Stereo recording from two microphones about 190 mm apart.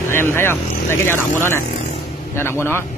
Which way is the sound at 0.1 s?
10° left (ahead or behind).